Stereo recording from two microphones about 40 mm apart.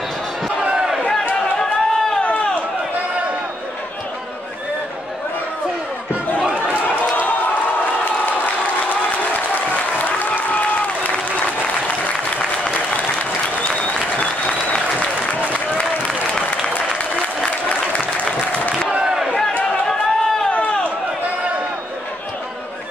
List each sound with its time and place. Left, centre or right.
1.6 s chatter: centre
10.0 s applause: left
19.9 s chatter: centre